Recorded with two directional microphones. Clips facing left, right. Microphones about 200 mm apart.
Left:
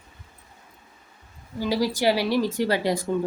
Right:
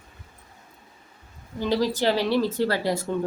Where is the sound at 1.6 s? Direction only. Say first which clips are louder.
Even; 10° left (ahead or behind).